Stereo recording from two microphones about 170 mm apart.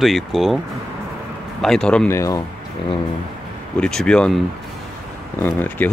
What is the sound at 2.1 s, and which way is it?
Speech, 20° left (ahead or behind).